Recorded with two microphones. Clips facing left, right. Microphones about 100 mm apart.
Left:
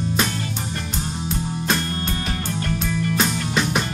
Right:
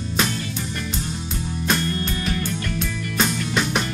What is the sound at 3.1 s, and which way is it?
Music, centre (ahead or behind).